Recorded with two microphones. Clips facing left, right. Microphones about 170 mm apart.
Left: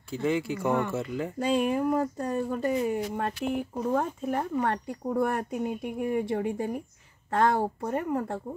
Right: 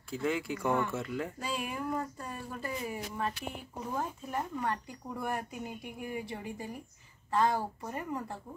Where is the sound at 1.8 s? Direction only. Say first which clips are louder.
Left 9 dB; 60° left (ahead or behind).